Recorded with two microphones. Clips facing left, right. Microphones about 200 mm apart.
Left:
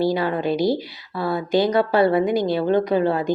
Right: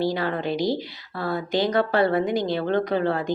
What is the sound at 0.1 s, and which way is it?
Speech, 15° left (ahead or behind).